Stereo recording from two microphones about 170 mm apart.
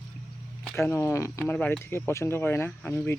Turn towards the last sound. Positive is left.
turn(degrees=10)  # may be behind; listen again after turning